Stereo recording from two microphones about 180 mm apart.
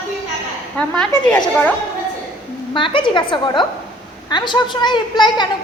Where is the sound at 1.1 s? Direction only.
15° left (ahead or behind).